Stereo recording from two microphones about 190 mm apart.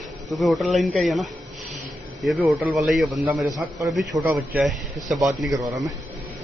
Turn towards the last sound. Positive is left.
turn(degrees=-20)  # may be behind; listen again after turning